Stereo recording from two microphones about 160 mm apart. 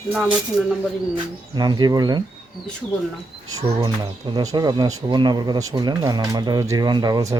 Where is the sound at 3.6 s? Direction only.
25° right (ahead or behind).